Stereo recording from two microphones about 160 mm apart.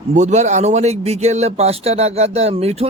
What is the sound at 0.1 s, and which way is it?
Speech, 45° right (ahead or behind).